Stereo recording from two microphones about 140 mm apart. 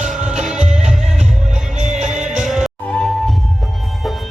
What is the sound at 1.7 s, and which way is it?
Music, 60° right (ahead or behind).